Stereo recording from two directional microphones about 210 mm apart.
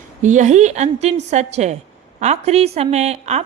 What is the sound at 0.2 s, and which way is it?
A woman's voice, 35° right (ahead or behind).